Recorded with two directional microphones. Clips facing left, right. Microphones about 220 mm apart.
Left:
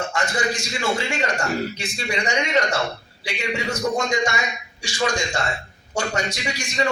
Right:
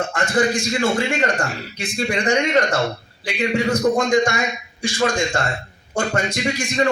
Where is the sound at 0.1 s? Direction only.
55° right (ahead or behind).